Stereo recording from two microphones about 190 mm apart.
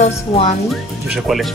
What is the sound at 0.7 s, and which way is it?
Speech, centre (ahead or behind).